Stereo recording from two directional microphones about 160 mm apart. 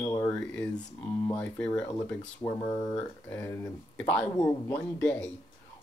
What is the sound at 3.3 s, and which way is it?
Speech, 10° left (ahead or behind).